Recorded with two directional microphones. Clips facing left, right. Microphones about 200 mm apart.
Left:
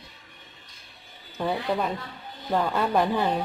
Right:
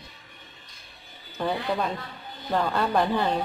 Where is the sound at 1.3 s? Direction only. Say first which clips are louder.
Left 1 dB; 10° left (ahead or behind).